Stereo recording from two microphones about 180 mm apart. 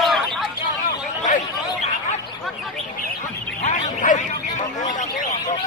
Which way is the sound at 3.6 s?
45° left (ahead or behind).